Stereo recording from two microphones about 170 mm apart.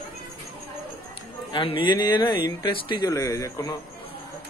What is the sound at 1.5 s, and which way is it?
A man's voice, 30° left (ahead or behind).